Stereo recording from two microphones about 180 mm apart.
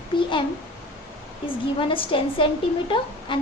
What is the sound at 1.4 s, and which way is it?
Speech, 30° left (ahead or behind).